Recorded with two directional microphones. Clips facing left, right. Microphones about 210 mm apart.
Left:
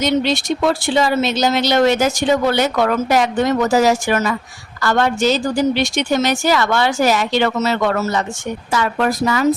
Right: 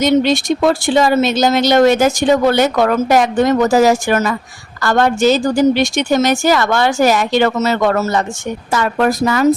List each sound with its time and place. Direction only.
0.0 s speech: 50° right (ahead or behind)